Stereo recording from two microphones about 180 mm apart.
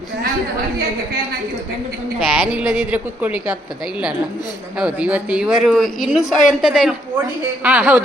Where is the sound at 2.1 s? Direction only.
5° right (ahead or behind).